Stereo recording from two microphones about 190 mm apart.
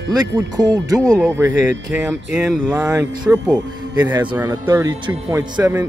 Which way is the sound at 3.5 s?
20° right (ahead or behind).